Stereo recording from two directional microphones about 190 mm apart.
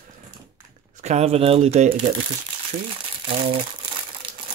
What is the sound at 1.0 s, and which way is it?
Speech, 35° right (ahead or behind).